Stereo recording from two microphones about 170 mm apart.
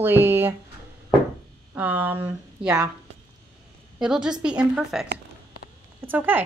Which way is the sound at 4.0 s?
5° right (ahead or behind).